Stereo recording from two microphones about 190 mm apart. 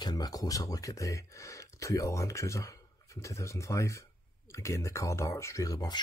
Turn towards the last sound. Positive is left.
turn(degrees=20)  # may be behind; listen again after turning